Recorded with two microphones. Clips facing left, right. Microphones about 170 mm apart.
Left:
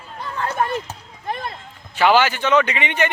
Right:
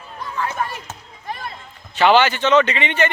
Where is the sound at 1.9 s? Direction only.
10° left (ahead or behind).